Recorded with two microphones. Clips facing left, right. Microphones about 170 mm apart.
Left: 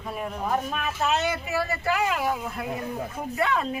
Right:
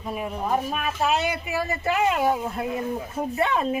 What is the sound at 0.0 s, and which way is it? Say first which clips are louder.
A woman's voice: right 2 dB; 10° right (ahead or behind).